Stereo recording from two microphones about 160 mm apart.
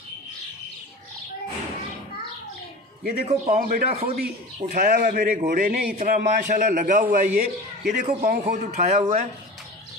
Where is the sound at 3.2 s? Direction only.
45° right (ahead or behind).